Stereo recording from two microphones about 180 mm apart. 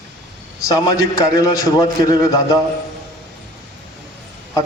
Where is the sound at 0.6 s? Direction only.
20° left (ahead or behind).